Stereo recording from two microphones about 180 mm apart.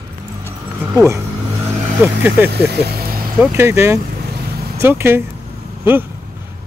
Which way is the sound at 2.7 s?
60° right (ahead or behind).